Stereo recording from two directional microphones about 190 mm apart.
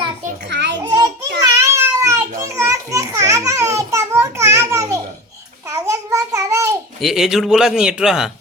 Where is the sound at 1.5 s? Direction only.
15° right (ahead or behind).